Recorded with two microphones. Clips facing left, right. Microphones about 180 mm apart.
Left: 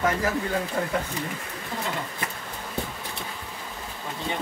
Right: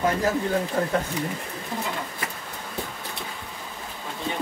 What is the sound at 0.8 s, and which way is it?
Speech, 35° right (ahead or behind).